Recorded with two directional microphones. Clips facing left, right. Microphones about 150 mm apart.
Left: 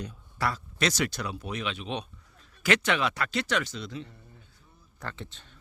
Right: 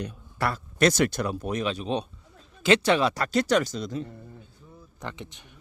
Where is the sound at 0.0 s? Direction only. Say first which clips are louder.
Right 2 dB; 65° right (ahead or behind); by 4.1 s 45° right (ahead or behind).